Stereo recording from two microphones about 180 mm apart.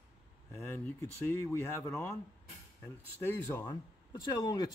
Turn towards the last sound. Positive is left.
turn(degrees=20)  # may be behind; listen again after turning